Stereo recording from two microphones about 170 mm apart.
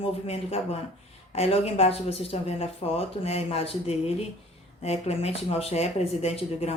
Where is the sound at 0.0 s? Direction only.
35° left (ahead or behind).